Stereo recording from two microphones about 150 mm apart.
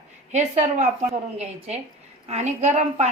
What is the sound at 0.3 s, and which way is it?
A woman's voice, 50° right (ahead or behind).